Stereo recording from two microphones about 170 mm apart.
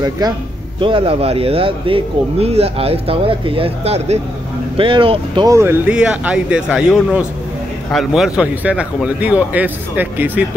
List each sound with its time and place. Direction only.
0.2 s speech: 25° right (ahead or behind)